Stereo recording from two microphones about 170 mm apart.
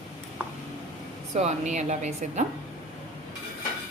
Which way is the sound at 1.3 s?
45° right (ahead or behind).